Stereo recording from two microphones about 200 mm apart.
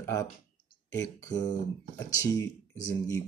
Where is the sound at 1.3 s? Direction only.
20° left (ahead or behind).